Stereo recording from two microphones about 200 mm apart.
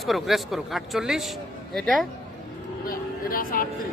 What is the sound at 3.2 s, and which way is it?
Speech, 45° left (ahead or behind).